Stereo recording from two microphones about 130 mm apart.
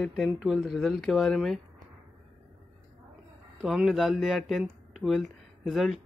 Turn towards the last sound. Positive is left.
turn(degrees=0)  # may be behind; listen again after turning